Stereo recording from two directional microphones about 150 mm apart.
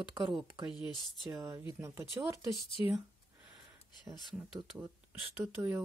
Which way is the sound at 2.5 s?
35° left (ahead or behind).